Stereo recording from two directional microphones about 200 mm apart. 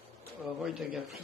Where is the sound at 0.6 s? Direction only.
Centre (ahead or behind).